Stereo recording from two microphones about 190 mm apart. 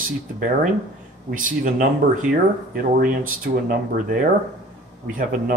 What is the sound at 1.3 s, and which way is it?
Speech, 45° right (ahead or behind).